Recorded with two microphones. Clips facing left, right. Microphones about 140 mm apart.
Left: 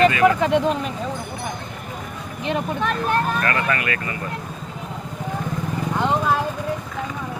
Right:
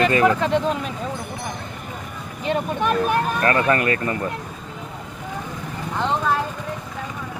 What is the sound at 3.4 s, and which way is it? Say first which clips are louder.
Speech: right 4 dB; 25° right (ahead or behind).